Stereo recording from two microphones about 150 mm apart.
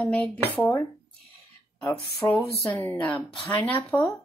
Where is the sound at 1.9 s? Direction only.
5° left (ahead or behind).